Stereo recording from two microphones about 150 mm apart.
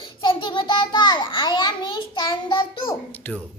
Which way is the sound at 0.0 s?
30° left (ahead or behind).